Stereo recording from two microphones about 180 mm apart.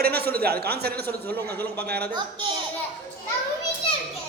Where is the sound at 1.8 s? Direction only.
60° right (ahead or behind).